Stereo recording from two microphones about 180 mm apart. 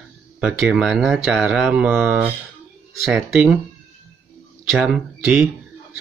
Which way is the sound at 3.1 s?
Centre (ahead or behind).